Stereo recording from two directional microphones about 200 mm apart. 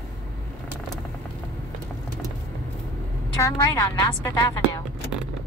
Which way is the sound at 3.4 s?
15° left (ahead or behind).